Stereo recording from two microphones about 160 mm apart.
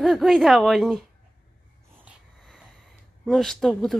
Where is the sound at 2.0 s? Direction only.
5° right (ahead or behind).